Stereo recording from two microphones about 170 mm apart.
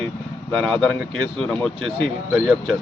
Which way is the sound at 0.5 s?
5° left (ahead or behind).